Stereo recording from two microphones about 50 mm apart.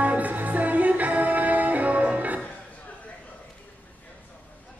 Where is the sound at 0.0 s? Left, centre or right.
Right.